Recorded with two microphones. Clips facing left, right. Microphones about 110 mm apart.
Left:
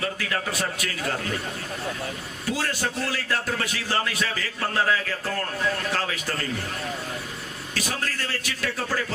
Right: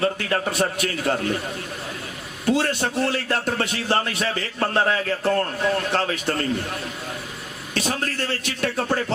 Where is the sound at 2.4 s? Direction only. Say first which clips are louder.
Right 6 dB; 25° right (ahead or behind).